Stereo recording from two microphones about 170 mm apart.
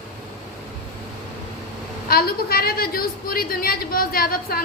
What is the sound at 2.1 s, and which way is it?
A woman's voice, 65° left (ahead or behind).